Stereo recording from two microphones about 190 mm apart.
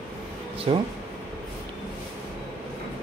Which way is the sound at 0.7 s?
30° right (ahead or behind).